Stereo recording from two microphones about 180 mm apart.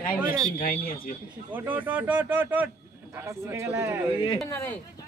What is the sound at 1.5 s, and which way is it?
Speech, 10° right (ahead or behind).